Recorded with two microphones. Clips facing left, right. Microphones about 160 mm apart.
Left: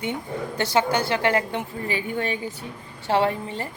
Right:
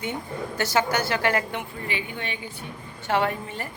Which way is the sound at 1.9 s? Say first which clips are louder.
Left 8 dB; 40° left (ahead or behind).